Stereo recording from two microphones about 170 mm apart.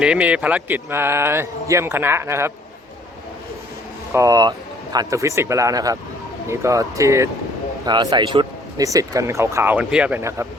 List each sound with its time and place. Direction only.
0.0 s speech: 5° right (ahead or behind)
4.1 s speech: 20° right (ahead or behind)